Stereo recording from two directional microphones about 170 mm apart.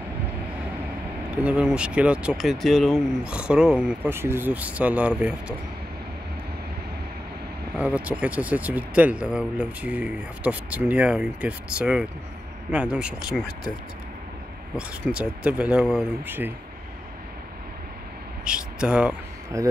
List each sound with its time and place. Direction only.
1.3 s speech: 5° right (ahead or behind)
7.7 s speech: 5° right (ahead or behind)
14.8 s speech: 5° right (ahead or behind)
18.4 s speech: 5° right (ahead or behind)
19.5 s speech: 20° right (ahead or behind)